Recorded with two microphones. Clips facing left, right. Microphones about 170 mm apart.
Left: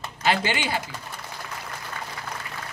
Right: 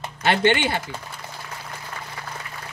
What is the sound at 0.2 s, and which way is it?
Speech, 60° right (ahead or behind).